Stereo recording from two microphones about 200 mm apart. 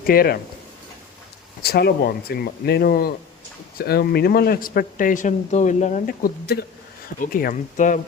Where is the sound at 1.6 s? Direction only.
50° left (ahead or behind).